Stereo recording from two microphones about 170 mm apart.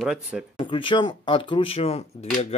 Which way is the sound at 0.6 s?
30° left (ahead or behind).